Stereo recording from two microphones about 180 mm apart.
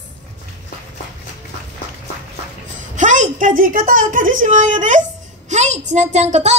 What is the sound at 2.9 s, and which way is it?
A woman's voice, 45° right (ahead or behind).